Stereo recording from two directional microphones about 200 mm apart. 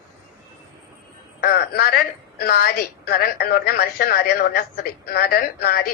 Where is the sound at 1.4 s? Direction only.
50° left (ahead or behind).